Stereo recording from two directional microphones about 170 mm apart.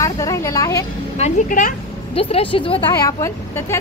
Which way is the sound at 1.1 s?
45° left (ahead or behind).